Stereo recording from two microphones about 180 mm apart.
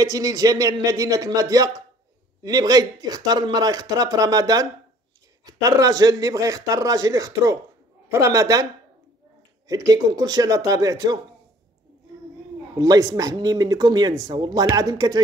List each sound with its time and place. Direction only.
0.0 s speech: 20° right (ahead or behind)
9.7 s speech: 20° right (ahead or behind)
12.7 s speech: 20° right (ahead or behind)